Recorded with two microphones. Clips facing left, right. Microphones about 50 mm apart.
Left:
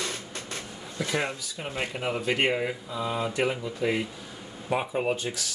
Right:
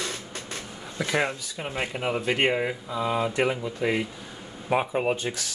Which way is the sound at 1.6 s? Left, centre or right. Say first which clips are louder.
Right 2 dB; centre.